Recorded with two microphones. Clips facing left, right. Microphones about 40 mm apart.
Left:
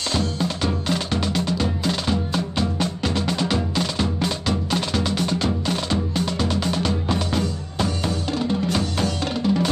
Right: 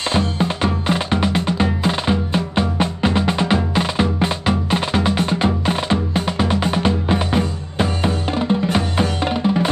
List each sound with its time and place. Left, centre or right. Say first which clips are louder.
0.1 s music: right 3 dB; right